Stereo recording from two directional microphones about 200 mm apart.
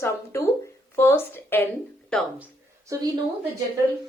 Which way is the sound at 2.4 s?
15° right (ahead or behind).